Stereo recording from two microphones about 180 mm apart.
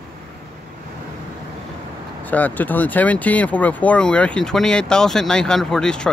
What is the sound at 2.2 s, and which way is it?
Speech, 10° left (ahead or behind).